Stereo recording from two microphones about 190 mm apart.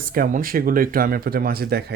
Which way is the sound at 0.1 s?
45° right (ahead or behind).